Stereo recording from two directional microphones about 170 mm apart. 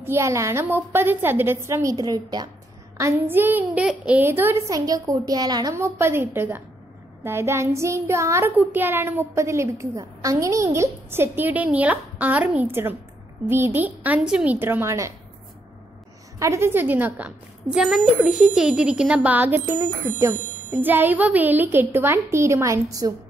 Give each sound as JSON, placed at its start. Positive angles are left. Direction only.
{"t": 0.0, "sound": "child singing", "side_deg": -15}
{"t": 16.3, "sound": "child singing", "side_deg": -15}